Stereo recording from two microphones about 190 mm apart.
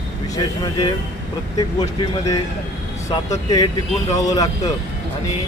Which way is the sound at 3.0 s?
20° left (ahead or behind).